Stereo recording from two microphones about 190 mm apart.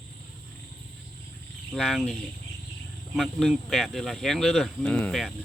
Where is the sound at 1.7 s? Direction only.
Centre (ahead or behind).